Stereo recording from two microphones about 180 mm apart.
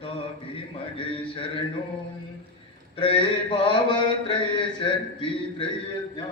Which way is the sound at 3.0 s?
30° left (ahead or behind).